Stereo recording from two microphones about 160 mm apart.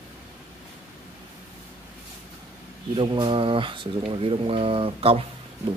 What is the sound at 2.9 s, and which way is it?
Speech, 30° right (ahead or behind).